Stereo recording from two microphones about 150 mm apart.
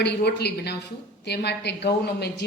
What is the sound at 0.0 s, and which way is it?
A woman's voice, 90° left.